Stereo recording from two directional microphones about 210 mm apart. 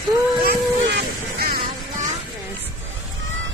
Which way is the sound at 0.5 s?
45° right (ahead or behind).